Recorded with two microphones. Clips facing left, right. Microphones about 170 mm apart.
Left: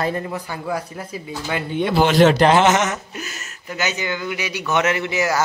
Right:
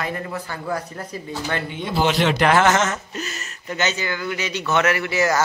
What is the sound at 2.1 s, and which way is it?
Speech, 45° left (ahead or behind).